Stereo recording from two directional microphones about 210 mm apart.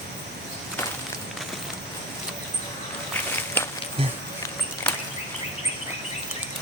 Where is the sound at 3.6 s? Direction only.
10° left (ahead or behind).